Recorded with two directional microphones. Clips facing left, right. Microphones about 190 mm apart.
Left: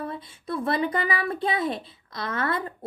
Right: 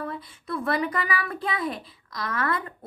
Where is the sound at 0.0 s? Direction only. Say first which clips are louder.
Even; 25° left (ahead or behind).